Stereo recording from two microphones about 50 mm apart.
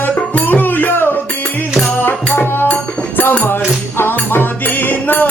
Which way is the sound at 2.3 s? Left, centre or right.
Left.